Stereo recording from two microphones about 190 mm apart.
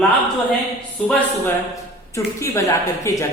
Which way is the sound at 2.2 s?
15° left (ahead or behind).